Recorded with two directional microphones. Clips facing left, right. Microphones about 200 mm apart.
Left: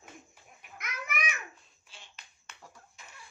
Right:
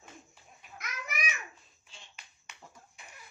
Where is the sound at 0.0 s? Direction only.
10° left (ahead or behind).